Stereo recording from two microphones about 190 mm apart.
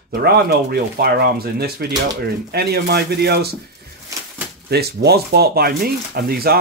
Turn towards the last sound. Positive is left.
turn(degrees=-55)  # may be behind; listen again after turning